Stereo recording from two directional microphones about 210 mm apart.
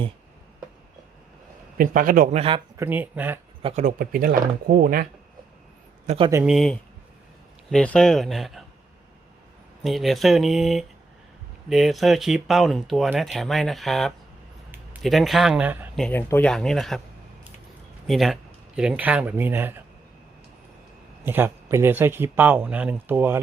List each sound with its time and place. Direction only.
1.8 s a man's voice: 40° right (ahead or behind)
2.7 s speech: 10° right (ahead or behind)
3.6 s speech: 30° right (ahead or behind)
6.1 s a man's voice: 25° right (ahead or behind)
6.3 s speech: 5° right (ahead or behind)
9.8 s speech: centre (ahead or behind)
16.0 s speech: 5° left (ahead or behind)
18.0 s speech: centre (ahead or behind)
21.2 s speech: 10° right (ahead or behind)